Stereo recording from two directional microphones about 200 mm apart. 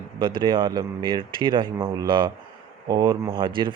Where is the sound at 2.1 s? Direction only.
25° right (ahead or behind).